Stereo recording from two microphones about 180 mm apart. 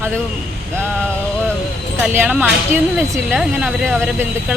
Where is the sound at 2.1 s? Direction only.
5° right (ahead or behind).